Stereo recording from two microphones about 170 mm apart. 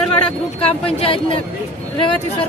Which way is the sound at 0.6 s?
35° left (ahead or behind).